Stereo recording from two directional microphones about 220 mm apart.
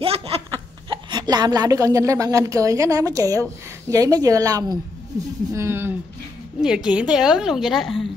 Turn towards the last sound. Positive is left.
turn(degrees=0)  # may be behind; listen again after turning